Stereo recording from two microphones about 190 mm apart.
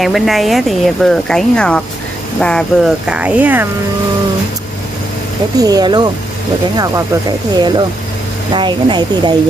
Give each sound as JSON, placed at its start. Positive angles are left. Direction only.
{"t": 0.0, "sound": "speech", "side_deg": 0}
{"t": 5.6, "sound": "speech", "side_deg": -20}